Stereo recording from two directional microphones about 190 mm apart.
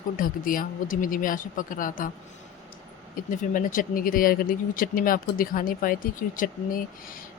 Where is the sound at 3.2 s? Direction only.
45° left (ahead or behind).